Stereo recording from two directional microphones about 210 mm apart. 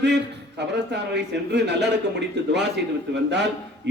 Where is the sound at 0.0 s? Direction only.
55° right (ahead or behind).